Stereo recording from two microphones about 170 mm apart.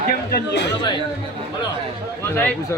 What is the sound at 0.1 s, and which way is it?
Speech, 65° left (ahead or behind).